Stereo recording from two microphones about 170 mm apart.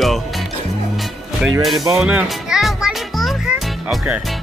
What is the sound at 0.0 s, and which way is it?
Music, centre (ahead or behind).